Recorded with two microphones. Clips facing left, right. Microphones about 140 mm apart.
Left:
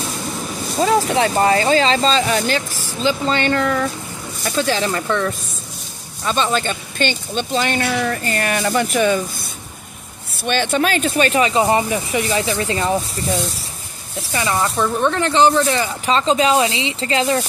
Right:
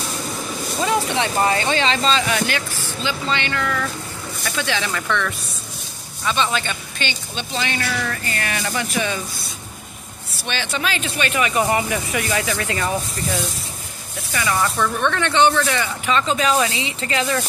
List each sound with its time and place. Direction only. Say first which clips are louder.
0.7 s speech: left 5 dB; 35° left (ahead or behind)
7.8 s speech: left 5 dB; 30° left (ahead or behind)
14.3 s speech: left 2 dB; 30° left (ahead or behind)